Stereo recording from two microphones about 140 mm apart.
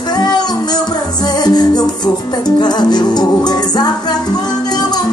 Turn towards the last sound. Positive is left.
turn(degrees=30)  # may be behind; listen again after turning